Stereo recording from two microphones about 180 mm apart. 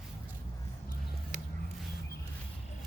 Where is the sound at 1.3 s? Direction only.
40° right (ahead or behind).